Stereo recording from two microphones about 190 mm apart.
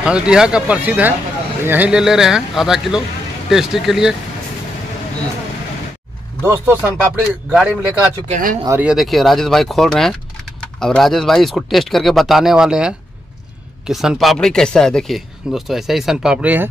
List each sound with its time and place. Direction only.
0.0 s speech: 5° right (ahead or behind)
6.4 s speech: 10° right (ahead or behind)
8.3 s speech: 45° right (ahead or behind)
8.6 s speech: 5° right (ahead or behind)